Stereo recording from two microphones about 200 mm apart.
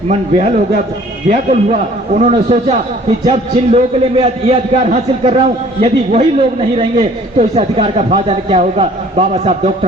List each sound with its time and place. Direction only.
0.1 s speech: 30° right (ahead or behind)